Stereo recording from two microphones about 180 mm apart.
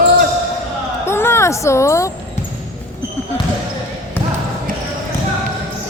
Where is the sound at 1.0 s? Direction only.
15° left (ahead or behind).